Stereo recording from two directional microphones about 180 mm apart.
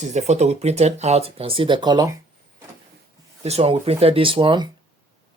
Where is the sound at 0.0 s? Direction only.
40° right (ahead or behind); by 2.1 s 25° right (ahead or behind).